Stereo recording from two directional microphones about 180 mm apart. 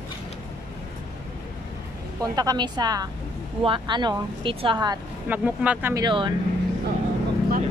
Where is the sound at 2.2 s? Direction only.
20° right (ahead or behind).